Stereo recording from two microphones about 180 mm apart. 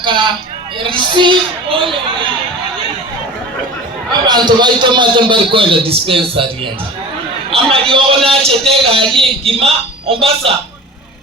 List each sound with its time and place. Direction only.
0.0 s a sound: 25° right (ahead or behind)
0.8 s a man's voice: 25° right (ahead or behind)
4.1 s a man's voice: 25° right (ahead or behind)
7.5 s a man's voice: 30° right (ahead or behind)